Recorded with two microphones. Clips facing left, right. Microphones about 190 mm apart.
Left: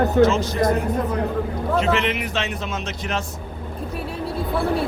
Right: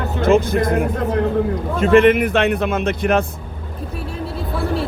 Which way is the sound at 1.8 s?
50° right (ahead or behind).